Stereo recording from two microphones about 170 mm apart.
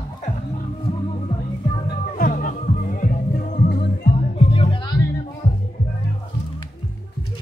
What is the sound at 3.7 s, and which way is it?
Music, 75° left (ahead or behind).